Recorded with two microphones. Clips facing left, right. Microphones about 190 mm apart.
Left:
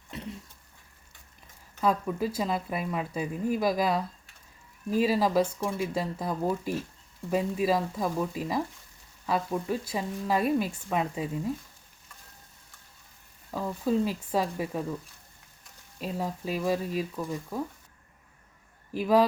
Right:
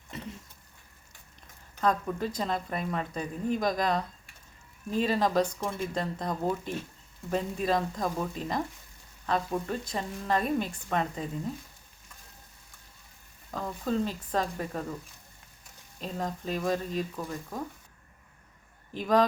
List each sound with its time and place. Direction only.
0.1 s throat clearing: centre (ahead or behind)
1.8 s speech: 5° left (ahead or behind)
13.5 s speech: 10° left (ahead or behind)
16.0 s speech: 10° left (ahead or behind)
18.9 s speech: 5° left (ahead or behind)